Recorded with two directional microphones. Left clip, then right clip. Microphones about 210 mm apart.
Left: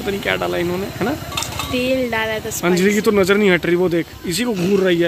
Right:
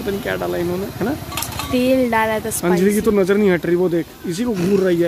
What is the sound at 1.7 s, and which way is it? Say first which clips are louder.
Speech: right 3 dB; 50° right (ahead or behind).